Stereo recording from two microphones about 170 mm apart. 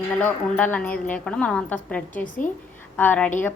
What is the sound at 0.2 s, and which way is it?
A woman's voice, 10° left (ahead or behind).